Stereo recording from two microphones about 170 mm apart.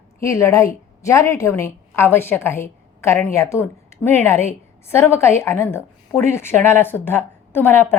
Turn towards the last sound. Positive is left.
turn(degrees=15)  # may be behind; listen again after turning